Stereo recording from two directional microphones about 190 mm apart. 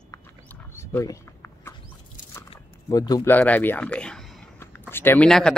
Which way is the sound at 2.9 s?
20° left (ahead or behind).